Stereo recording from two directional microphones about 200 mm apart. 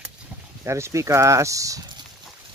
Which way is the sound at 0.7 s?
15° right (ahead or behind).